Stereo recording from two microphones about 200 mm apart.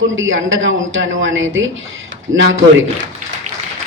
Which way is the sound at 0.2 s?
75° right (ahead or behind).